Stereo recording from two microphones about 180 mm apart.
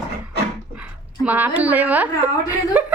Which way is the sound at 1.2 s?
10° right (ahead or behind).